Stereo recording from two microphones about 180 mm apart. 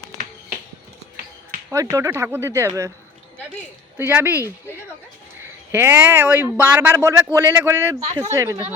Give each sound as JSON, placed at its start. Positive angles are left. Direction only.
{"t": 1.7, "sound": "speech", "side_deg": -15}
{"t": 3.9, "sound": "speech", "side_deg": -10}
{"t": 5.7, "sound": "speech", "side_deg": -10}